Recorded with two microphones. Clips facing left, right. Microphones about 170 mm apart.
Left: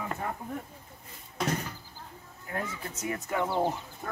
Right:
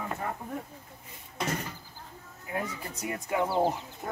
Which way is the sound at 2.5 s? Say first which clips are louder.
Right 1 dB; 15° right (ahead or behind).